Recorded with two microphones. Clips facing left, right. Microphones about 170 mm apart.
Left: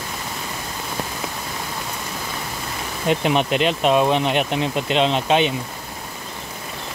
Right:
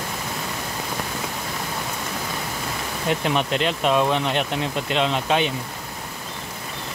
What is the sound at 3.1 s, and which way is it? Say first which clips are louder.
Speech: left 4 dB; 20° left (ahead or behind).